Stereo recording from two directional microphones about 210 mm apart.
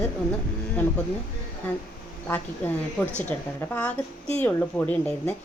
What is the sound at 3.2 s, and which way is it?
A woman's voice, 5° left (ahead or behind).